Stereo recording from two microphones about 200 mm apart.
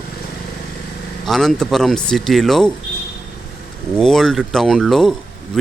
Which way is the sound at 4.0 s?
Centre (ahead or behind).